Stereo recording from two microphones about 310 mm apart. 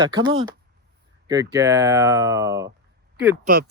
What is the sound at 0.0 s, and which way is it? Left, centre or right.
Speech, centre.